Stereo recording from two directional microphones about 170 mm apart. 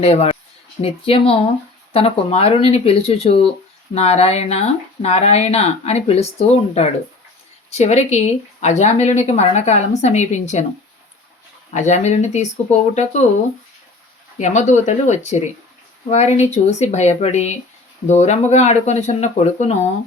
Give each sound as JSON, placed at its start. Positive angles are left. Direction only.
{"t": 0.0, "sound": "speech", "side_deg": 35}
{"t": 11.7, "sound": "speech", "side_deg": 45}
{"t": 14.3, "sound": "speech", "side_deg": 45}